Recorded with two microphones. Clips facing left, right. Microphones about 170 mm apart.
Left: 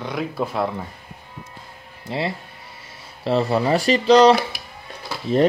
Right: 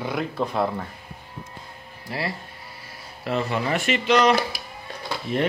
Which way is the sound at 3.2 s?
35° left (ahead or behind).